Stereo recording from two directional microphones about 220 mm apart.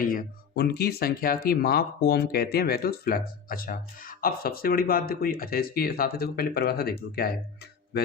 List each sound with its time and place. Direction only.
0.0 s speech: 40° left (ahead or behind)